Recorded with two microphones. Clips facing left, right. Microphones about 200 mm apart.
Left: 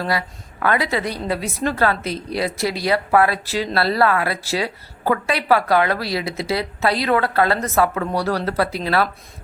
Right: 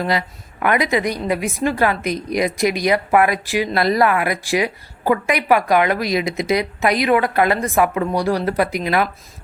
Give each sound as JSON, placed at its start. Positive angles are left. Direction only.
{"t": 0.0, "sound": "a woman's voice", "side_deg": -20}